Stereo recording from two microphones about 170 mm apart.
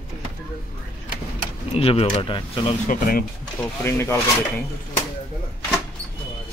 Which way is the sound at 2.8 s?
55° left (ahead or behind).